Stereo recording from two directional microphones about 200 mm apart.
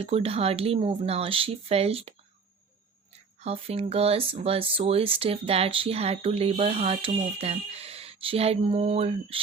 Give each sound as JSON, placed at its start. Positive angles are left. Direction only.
{"t": 0.0, "sound": "speech", "side_deg": -30}
{"t": 3.4, "sound": "speech", "side_deg": -30}